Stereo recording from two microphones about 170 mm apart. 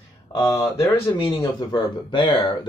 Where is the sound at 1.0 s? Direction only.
25° left (ahead or behind).